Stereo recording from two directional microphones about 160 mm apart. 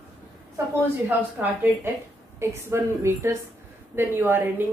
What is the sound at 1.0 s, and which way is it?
A woman's voice, 10° right (ahead or behind).